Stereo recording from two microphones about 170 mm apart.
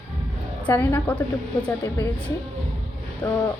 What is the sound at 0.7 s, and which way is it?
Speech, 10° left (ahead or behind).